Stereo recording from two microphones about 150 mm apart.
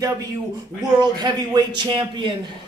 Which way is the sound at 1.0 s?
30° right (ahead or behind).